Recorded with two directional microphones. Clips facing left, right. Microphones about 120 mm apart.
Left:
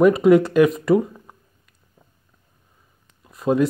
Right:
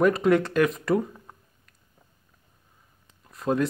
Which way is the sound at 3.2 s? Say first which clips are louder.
Left 5 dB; 10° left (ahead or behind).